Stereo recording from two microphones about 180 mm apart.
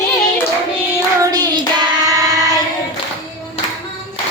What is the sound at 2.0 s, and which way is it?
Child singing, 20° right (ahead or behind).